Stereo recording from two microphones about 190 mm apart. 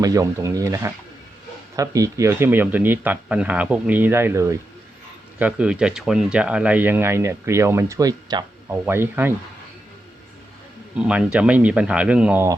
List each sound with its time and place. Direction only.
0.0 s speech: 20° right (ahead or behind)
10.9 s speech: 5° right (ahead or behind)